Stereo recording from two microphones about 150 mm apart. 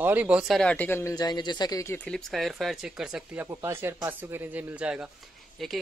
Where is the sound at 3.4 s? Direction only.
15° right (ahead or behind); by 5.7 s centre (ahead or behind).